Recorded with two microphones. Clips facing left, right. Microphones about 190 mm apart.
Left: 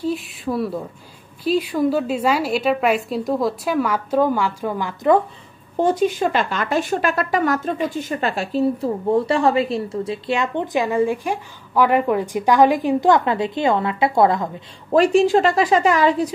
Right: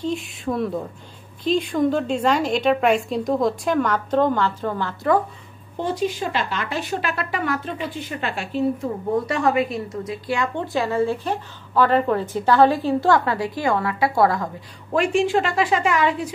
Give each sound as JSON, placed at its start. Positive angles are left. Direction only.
{"t": 0.0, "sound": "a woman's voice", "side_deg": 5}
{"t": 5.8, "sound": "a woman's voice", "side_deg": 50}
{"t": 14.9, "sound": "a woman's voice", "side_deg": 40}